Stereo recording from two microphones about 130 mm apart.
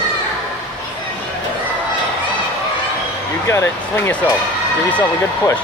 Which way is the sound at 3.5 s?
20° left (ahead or behind).